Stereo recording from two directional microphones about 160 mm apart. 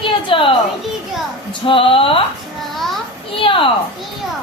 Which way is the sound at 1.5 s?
35° left (ahead or behind).